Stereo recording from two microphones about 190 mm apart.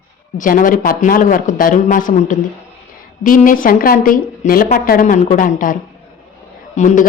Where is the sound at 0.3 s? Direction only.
45° left (ahead or behind).